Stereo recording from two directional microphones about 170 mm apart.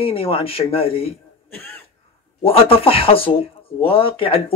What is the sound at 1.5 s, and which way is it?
Throat clearing, 10° left (ahead or behind).